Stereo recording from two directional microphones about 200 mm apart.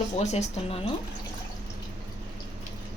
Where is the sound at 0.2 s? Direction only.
35° left (ahead or behind).